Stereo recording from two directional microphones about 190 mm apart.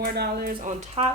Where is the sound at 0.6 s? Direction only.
30° right (ahead or behind).